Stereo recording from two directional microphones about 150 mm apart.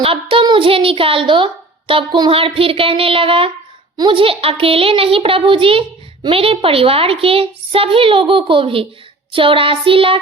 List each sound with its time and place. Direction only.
0.0 s a child's voice: 35° right (ahead or behind)